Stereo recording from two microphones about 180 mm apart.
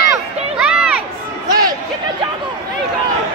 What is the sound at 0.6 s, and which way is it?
Crowd, 5° right (ahead or behind).